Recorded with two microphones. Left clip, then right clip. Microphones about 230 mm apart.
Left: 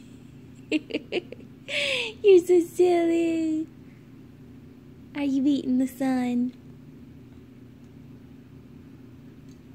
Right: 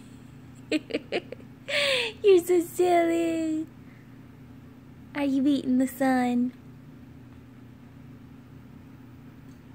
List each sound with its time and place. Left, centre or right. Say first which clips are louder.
0.7 s speech: even; right
5.1 s speech: even; right